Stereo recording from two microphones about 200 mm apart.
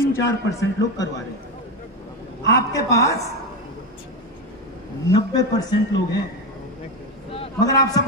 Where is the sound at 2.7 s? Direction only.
15° left (ahead or behind).